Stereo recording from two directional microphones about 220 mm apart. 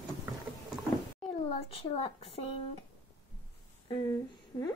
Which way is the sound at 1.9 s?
25° left (ahead or behind).